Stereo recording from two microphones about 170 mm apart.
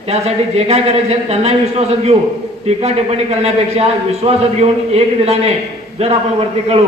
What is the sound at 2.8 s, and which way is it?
A man's voice, 40° right (ahead or behind).